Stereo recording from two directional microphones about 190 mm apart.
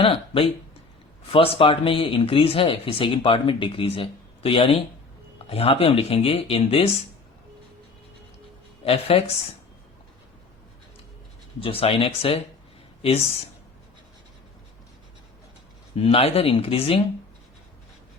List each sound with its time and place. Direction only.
0.0 s speech: 30° left (ahead or behind)
8.8 s speech: 30° left (ahead or behind)
11.6 s speech: 30° left (ahead or behind)
16.0 s speech: 30° left (ahead or behind)